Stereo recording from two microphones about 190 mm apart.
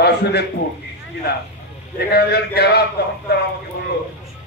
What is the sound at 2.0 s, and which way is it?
A man's voice, 55° left (ahead or behind).